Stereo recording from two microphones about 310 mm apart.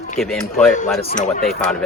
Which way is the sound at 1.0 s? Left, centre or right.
Centre.